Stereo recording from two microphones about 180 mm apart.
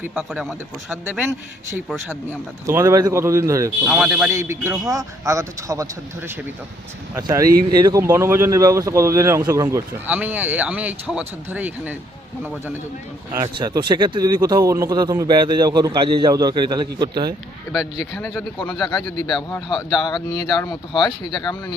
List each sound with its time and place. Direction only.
0.3 s speech: centre (ahead or behind)
0.9 s speech: 10° right (ahead or behind)
3.8 s speech: 5° right (ahead or behind)
4.3 s a man's voice: 15° right (ahead or behind)
13.6 s a man's voice: 25° right (ahead or behind)
18.5 s speech: 25° left (ahead or behind)